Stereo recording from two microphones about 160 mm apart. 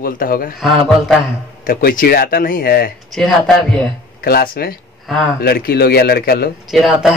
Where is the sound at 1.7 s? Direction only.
65° left (ahead or behind).